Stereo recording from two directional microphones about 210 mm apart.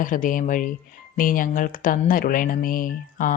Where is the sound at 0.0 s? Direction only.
40° left (ahead or behind).